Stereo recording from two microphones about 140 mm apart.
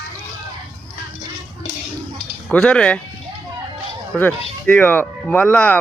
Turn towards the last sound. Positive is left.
turn(degrees=10)  # may be behind; listen again after turning